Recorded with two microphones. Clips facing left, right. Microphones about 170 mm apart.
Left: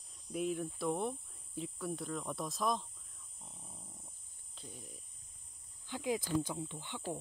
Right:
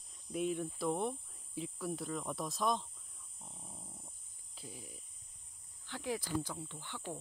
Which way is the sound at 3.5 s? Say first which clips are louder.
Right 2 dB; 15° right (ahead or behind).